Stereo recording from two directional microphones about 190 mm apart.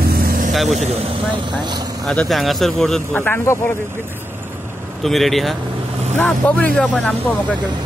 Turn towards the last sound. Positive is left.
turn(degrees=5)  # may be behind; listen again after turning